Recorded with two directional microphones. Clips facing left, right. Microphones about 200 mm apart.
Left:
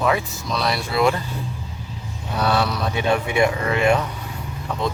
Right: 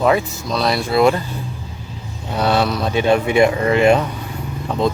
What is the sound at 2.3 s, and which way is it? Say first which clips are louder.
Speech: right 4 dB; 25° right (ahead or behind).